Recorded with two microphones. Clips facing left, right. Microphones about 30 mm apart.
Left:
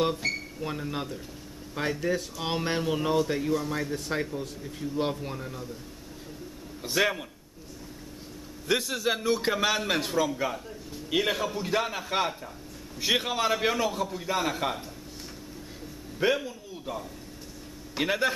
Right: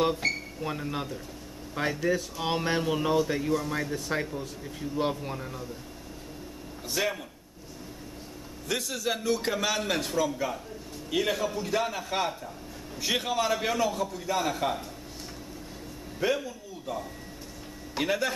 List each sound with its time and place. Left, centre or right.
0.2 s a man's voice: centre
6.8 s speech: centre
8.6 s a man's voice: left
16.2 s a man's voice: centre